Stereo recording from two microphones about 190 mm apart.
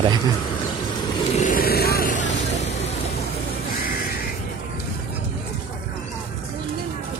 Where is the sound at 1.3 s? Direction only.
45° left (ahead or behind).